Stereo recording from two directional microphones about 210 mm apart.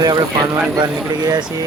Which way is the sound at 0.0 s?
20° right (ahead or behind).